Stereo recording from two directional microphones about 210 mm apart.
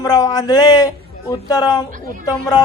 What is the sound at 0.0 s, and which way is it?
A man's voice, 20° left (ahead or behind).